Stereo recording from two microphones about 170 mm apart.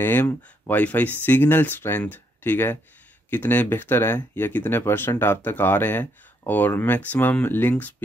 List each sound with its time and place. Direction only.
0.0 s speech: 10° left (ahead or behind)